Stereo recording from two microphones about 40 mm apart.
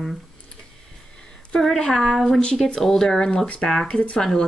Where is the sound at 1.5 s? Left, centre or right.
Centre.